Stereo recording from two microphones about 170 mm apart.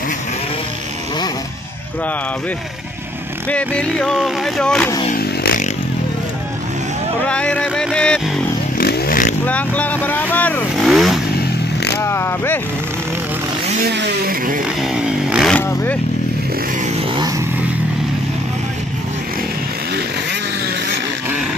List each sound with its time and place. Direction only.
3.4 s speech: 5° left (ahead or behind)
5.1 s a sound: 60° left (ahead or behind)
7.2 s speech: 5° left (ahead or behind)
8.7 s vehicle: 65° left (ahead or behind)
9.5 s speech: 10° left (ahead or behind)
10.8 s vehicle: centre (ahead or behind)
12.0 s speech: 15° left (ahead or behind)
13.9 s vehicle: 75° right (ahead or behind); by 14.6 s 55° right (ahead or behind)
14.8 s vehicle: 5° right (ahead or behind)
15.5 s vehicle: 10° left (ahead or behind)
16.8 s vehicle: 40° right (ahead or behind)